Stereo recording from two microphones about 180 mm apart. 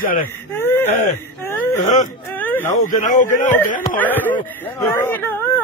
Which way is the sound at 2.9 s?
45° left (ahead or behind).